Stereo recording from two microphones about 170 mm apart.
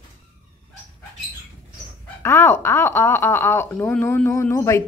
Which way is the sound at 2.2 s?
15° left (ahead or behind).